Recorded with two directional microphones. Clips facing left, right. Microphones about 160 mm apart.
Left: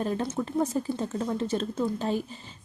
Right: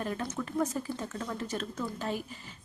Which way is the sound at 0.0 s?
30° left (ahead or behind).